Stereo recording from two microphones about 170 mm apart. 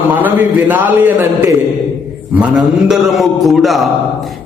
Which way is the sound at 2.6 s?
Centre (ahead or behind).